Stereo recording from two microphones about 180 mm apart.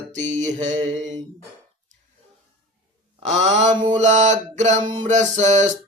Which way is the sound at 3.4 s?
40° right (ahead or behind).